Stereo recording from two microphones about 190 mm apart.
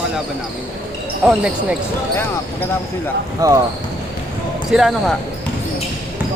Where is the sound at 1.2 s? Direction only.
5° right (ahead or behind).